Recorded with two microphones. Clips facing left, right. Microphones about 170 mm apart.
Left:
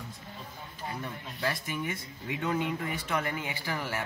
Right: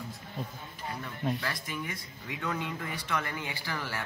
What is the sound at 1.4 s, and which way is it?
A man's voice, 20° left (ahead or behind).